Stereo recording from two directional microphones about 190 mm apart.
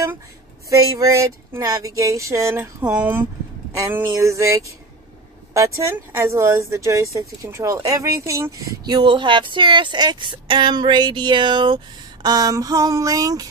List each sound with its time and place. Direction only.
0.7 s speech: 15° right (ahead or behind)